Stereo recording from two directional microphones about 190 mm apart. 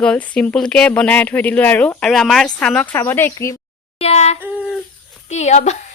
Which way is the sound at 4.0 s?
35° left (ahead or behind).